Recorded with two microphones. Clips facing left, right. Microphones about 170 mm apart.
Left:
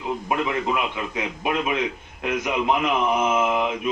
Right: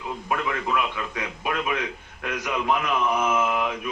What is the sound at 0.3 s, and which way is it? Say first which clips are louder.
A man's voice: left 2 dB; 20° left (ahead or behind).